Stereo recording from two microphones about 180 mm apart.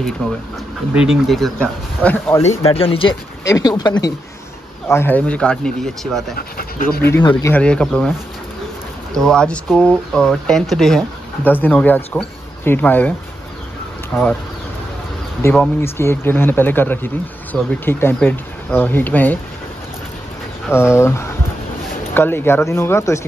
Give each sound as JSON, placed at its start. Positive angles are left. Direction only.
{"t": 0.2, "sound": "speech", "side_deg": 0}
{"t": 2.4, "sound": "speech", "side_deg": 30}
{"t": 3.4, "sound": "speech", "side_deg": 20}
{"t": 6.3, "sound": "speech", "side_deg": 55}
{"t": 7.4, "sound": "speech", "side_deg": 10}
{"t": 9.1, "sound": "speech", "side_deg": 5}
{"t": 14.1, "sound": "speech", "side_deg": 5}
{"t": 15.5, "sound": "speech", "side_deg": 10}
{"t": 20.7, "sound": "speech", "side_deg": 15}